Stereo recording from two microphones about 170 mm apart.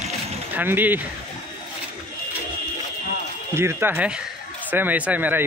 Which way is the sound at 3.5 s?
15° right (ahead or behind).